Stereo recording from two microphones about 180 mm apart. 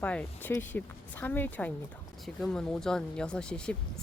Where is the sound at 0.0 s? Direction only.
5° left (ahead or behind).